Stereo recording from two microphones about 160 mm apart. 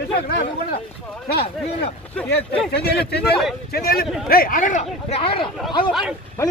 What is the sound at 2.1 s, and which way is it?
Speech, 10° left (ahead or behind).